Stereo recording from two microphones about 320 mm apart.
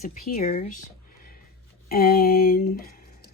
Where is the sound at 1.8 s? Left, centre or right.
Left.